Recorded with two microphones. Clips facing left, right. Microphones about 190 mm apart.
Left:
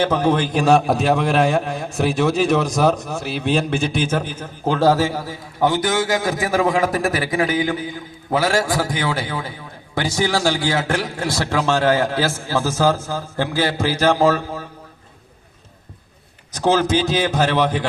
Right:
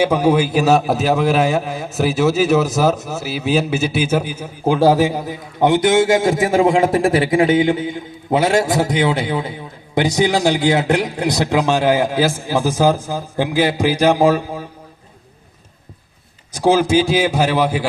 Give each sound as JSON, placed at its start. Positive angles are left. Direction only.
{"t": 0.0, "sound": "a man's voice", "side_deg": -10}
{"t": 16.5, "sound": "a man's voice", "side_deg": -10}